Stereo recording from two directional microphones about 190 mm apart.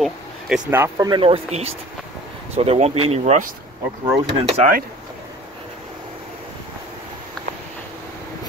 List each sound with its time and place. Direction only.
0.0 s speech: 5° right (ahead or behind); by 4.6 s 30° right (ahead or behind)